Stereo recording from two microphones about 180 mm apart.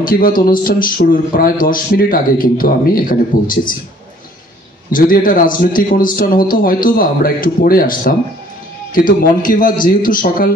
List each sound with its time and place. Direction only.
0.0 s speech: 55° left (ahead or behind)
4.9 s speech: 50° left (ahead or behind)